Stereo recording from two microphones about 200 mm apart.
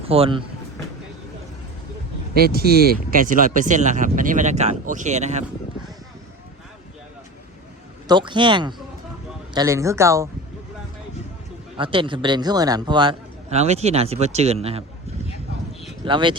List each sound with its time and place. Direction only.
0.1 s a man's voice: 25° right (ahead or behind)
2.3 s speech: 50° right (ahead or behind); by 5.5 s 35° right (ahead or behind)
8.0 s a man's voice: 25° right (ahead or behind)
11.8 s a man's voice: 25° right (ahead or behind)
16.0 s a man's voice: 25° right (ahead or behind)